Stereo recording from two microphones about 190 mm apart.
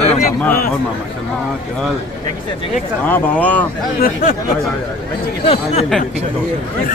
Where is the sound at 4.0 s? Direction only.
50° left (ahead or behind).